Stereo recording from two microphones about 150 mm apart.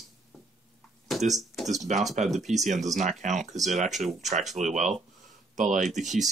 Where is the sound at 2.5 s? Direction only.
55° right (ahead or behind).